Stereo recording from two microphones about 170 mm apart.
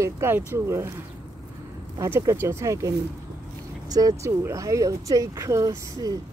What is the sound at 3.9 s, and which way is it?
Speech, 20° right (ahead or behind).